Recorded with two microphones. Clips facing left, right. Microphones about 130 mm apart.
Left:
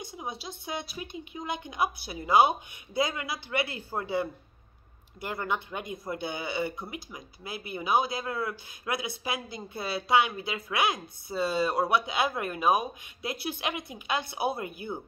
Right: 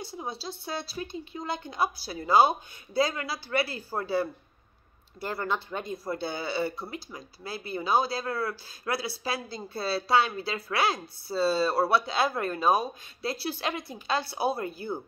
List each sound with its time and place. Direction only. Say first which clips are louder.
0.0 s a woman's voice: right 2 dB; 20° left (ahead or behind)